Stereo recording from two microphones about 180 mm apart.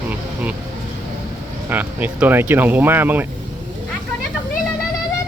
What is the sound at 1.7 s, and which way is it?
Speech, 10° right (ahead or behind).